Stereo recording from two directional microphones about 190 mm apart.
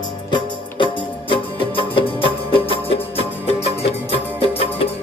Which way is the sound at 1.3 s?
25° left (ahead or behind).